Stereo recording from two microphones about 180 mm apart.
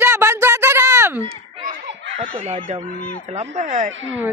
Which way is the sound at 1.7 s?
40° right (ahead or behind).